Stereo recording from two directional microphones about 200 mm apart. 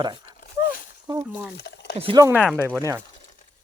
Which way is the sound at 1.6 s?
60° left (ahead or behind).